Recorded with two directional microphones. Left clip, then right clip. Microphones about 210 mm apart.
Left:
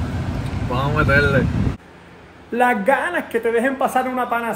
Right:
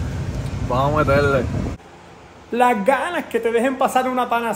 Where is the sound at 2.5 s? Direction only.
10° right (ahead or behind).